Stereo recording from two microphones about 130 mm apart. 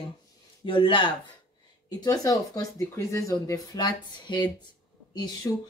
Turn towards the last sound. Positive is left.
turn(degrees=25)  # may be behind; listen again after turning